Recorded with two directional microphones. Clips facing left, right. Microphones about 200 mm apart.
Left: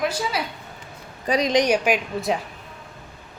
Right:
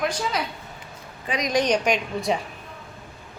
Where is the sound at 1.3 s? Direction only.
40° left (ahead or behind).